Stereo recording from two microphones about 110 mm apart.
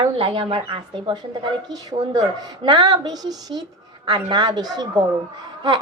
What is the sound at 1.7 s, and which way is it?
A woman's voice, 35° right (ahead or behind).